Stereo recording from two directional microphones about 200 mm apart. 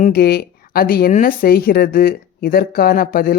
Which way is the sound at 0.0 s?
50° left (ahead or behind).